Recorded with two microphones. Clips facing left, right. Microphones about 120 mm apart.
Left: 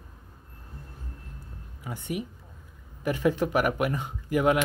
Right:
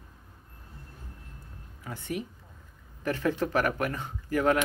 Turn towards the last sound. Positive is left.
turn(degrees=15)  # may be behind; listen again after turning